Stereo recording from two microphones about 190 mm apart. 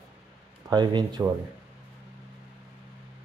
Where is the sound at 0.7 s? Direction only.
20° right (ahead or behind).